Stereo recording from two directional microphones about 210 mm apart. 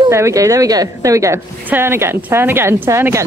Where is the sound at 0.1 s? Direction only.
15° right (ahead or behind).